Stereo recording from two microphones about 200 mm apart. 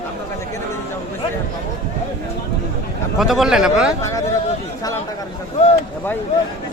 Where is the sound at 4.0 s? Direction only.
15° left (ahead or behind).